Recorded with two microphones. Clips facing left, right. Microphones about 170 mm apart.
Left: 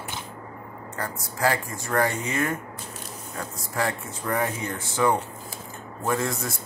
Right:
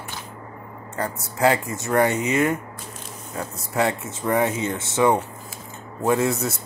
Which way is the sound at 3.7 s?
20° right (ahead or behind).